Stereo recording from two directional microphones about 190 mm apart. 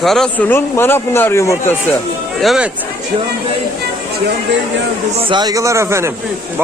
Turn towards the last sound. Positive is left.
turn(degrees=-15)  # may be behind; listen again after turning